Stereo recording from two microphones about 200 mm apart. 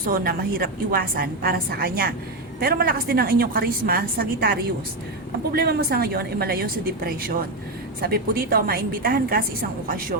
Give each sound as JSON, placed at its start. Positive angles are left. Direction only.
{"t": 0.0, "sound": "a woman's voice", "side_deg": -45}